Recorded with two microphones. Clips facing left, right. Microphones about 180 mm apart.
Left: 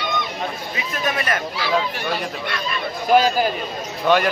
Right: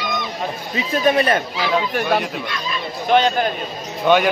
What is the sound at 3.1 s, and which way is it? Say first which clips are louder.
A man's voice: even; 5° left (ahead or behind).